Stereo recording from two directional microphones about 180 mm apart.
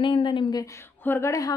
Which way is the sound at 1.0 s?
10° left (ahead or behind).